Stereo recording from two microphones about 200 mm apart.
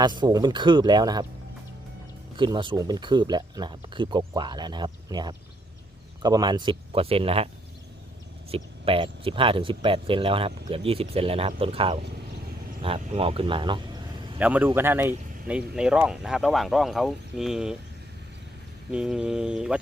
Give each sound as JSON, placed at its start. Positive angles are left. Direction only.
{"t": 0.0, "sound": "speech", "side_deg": -20}
{"t": 2.3, "sound": "speech", "side_deg": -25}
{"t": 14.3, "sound": "a man's voice", "side_deg": -10}
{"t": 18.9, "sound": "speech", "side_deg": -5}